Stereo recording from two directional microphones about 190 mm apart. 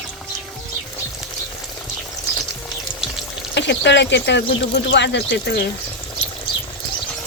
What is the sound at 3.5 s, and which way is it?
Speech, 65° left (ahead or behind).